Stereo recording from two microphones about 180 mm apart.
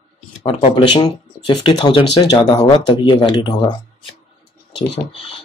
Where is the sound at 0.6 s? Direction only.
35° left (ahead or behind).